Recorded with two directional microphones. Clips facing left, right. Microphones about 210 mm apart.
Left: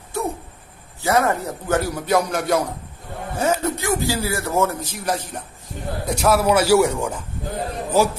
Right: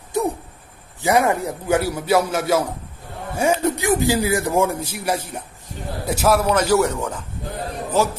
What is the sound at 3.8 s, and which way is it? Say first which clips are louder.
A man's voice: right 4 dB; 15° right (ahead or behind).